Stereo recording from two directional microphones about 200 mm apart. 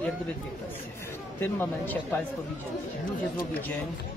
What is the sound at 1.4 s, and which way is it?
Speech, 10° left (ahead or behind).